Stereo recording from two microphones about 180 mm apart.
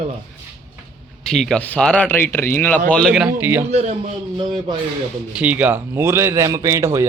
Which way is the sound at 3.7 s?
35° right (ahead or behind).